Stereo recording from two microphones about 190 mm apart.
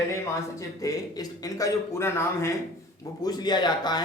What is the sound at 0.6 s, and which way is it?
A man's voice, 20° left (ahead or behind).